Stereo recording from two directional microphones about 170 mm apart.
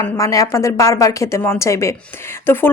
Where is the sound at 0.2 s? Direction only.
20° left (ahead or behind).